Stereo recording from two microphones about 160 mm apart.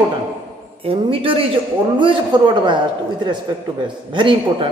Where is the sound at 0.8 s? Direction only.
35° right (ahead or behind).